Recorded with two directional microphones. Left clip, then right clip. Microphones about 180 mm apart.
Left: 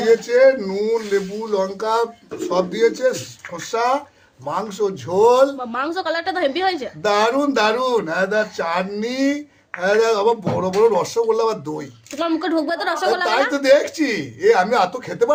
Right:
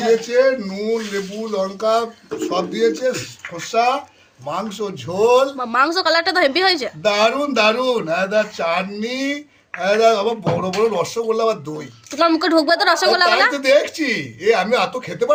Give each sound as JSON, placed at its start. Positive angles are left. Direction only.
{"t": 0.3, "sound": "speech", "side_deg": 40}
{"t": 5.5, "sound": "a woman's voice", "side_deg": -10}
{"t": 7.0, "sound": "speech", "side_deg": 40}
{"t": 12.1, "sound": "speech", "side_deg": -5}
{"t": 13.5, "sound": "speech", "side_deg": 40}